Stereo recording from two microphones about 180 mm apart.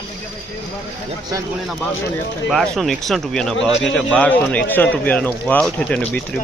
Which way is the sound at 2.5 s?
Centre (ahead or behind).